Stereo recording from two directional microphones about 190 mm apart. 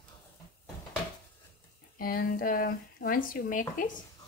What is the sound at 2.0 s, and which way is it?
Speech, 50° left (ahead or behind).